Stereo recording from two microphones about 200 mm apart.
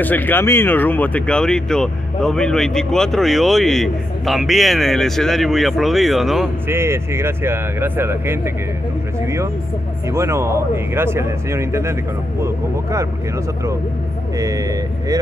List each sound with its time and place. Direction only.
0.0 s speech: 10° left (ahead or behind)
6.7 s speech: 10° right (ahead or behind)
14.3 s speech: 15° right (ahead or behind)